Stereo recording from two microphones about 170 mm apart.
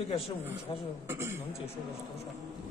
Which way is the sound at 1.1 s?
15° right (ahead or behind).